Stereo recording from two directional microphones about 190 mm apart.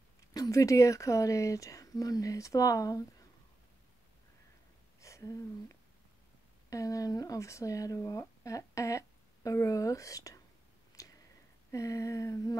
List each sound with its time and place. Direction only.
0.3 s speech: 20° left (ahead or behind)
5.0 s speech: 15° left (ahead or behind)
11.0 s a sound: 15° left (ahead or behind)
11.7 s speech: 15° left (ahead or behind)